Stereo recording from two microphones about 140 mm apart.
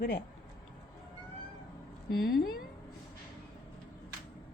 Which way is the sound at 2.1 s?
90° left.